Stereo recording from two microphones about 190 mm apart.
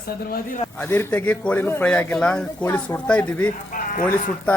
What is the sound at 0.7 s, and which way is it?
Speech, 10° left (ahead or behind).